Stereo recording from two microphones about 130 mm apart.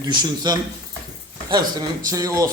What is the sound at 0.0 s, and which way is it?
Speech, 30° right (ahead or behind).